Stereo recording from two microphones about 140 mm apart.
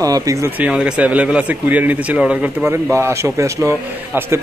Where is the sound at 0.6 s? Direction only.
5° right (ahead or behind).